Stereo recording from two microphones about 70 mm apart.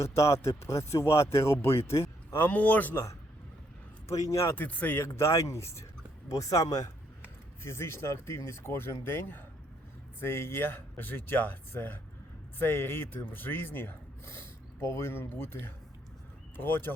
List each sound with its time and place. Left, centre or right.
0.0 s speech: left
2.5 s speech: left
4.1 s speech: left
4.5 s speech: left
5.1 s speech: left
6.2 s speech: left
7.6 s speech: left